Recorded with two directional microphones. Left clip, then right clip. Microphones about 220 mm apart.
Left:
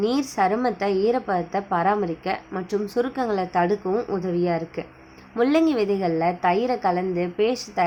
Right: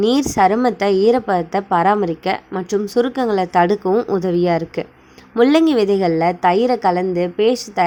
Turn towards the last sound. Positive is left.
turn(degrees=-30)  # may be behind; listen again after turning